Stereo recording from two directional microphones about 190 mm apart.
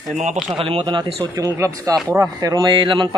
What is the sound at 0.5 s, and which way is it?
A man's voice, 30° right (ahead or behind).